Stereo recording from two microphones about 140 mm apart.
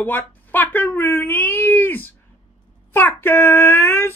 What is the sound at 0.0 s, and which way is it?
Speech, 15° left (ahead or behind).